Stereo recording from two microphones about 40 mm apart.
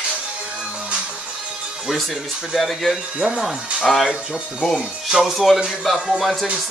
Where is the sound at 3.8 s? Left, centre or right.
Centre.